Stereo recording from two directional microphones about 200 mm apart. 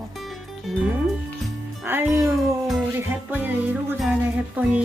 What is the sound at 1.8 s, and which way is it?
Music, 10° right (ahead or behind).